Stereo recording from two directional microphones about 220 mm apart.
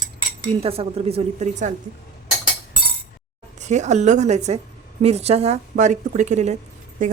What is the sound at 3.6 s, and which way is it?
A woman's voice, 30° right (ahead or behind).